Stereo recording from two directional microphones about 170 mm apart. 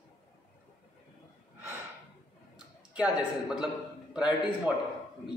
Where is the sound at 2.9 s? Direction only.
5° right (ahead or behind).